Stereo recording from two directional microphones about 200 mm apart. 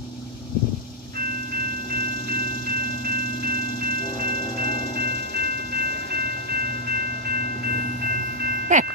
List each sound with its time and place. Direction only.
8.7 s music: 35° right (ahead or behind)